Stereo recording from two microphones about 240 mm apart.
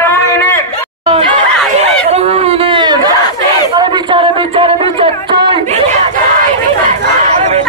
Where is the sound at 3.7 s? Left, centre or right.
Centre.